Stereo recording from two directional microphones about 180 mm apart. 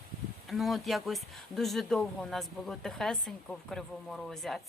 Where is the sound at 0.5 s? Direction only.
Centre (ahead or behind).